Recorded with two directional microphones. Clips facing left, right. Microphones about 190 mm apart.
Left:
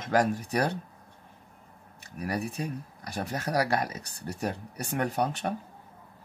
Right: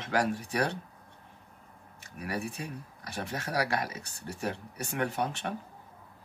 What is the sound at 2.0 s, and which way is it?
Speech, 40° left (ahead or behind).